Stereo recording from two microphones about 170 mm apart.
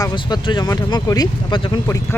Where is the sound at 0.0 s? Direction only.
25° left (ahead or behind).